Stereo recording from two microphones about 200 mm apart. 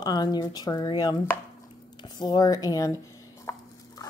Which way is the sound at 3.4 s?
15° left (ahead or behind).